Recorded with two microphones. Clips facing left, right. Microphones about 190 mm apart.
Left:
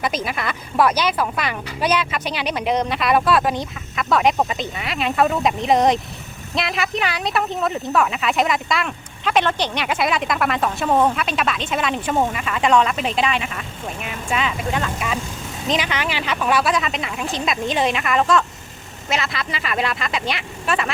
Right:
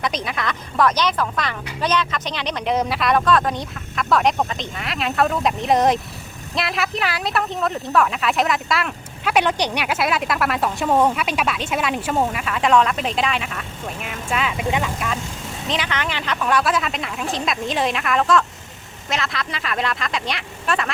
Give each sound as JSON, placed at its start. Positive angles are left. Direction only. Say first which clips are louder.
{"t": 0.0, "sound": "speech", "louder": "left 1 dB", "side_deg": 5}
{"t": 14.6, "sound": "speech", "louder": "right 1 dB", "side_deg": -15}
{"t": 14.8, "sound": "speech", "louder": "left 1 dB", "side_deg": 5}